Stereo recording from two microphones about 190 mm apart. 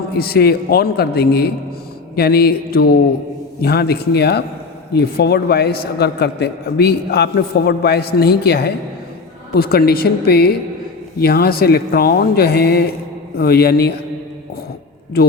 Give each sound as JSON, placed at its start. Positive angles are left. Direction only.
{"t": 0.1, "sound": "a man's voice", "side_deg": 55}